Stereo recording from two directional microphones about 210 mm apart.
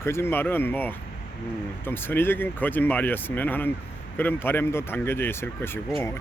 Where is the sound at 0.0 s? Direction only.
10° left (ahead or behind).